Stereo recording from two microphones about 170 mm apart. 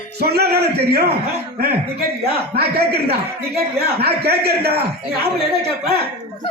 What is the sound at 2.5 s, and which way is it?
A man's voice, 70° right (ahead or behind).